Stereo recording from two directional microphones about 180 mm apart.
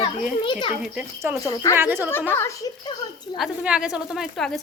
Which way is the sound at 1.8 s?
10° right (ahead or behind).